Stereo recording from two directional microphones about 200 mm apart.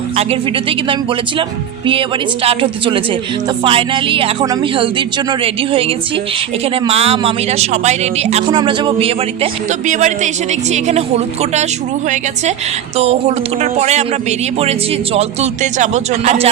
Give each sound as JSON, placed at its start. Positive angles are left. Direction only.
{"t": 1.9, "sound": "speech", "side_deg": -25}
{"t": 6.8, "sound": "speech", "side_deg": -30}
{"t": 13.0, "sound": "speech", "side_deg": -30}